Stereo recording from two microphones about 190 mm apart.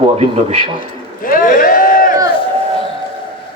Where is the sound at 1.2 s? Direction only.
45° left (ahead or behind).